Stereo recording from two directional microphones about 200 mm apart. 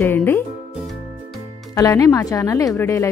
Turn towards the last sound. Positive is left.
turn(degrees=15)  # may be behind; listen again after turning